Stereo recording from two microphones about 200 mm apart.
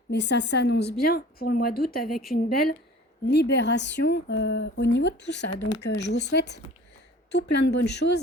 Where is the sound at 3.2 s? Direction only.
55° left (ahead or behind).